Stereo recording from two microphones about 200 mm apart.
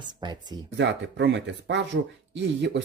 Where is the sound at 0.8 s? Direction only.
60° right (ahead or behind).